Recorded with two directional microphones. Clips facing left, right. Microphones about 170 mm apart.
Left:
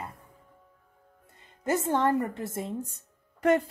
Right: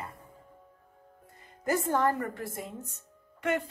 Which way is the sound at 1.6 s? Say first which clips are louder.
Left 1 dB; 20° left (ahead or behind).